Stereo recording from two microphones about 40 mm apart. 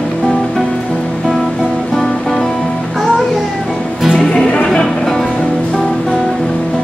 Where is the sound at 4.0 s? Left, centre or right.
Centre.